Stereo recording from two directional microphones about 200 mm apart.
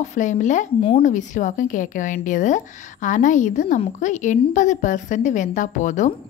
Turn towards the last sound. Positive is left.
turn(degrees=40)  # may be behind; listen again after turning